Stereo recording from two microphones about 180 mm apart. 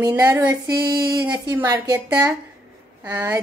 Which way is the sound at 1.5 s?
15° right (ahead or behind).